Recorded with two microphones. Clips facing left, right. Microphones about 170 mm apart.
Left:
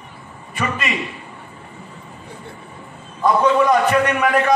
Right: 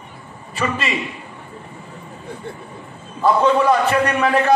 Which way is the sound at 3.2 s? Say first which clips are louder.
Even; 30° right (ahead or behind).